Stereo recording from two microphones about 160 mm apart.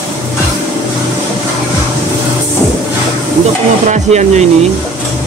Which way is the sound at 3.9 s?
45° right (ahead or behind).